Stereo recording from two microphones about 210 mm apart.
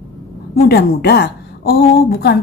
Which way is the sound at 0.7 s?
50° left (ahead or behind).